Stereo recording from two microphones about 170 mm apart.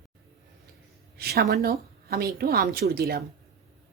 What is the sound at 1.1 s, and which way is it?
A woman's voice, 65° right (ahead or behind).